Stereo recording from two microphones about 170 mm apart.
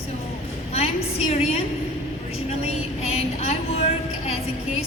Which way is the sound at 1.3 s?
35° left (ahead or behind).